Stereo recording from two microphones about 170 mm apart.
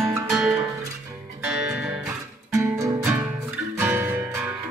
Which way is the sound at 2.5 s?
15° right (ahead or behind).